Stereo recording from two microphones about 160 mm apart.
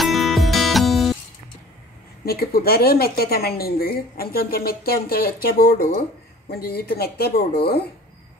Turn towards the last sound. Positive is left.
turn(degrees=80)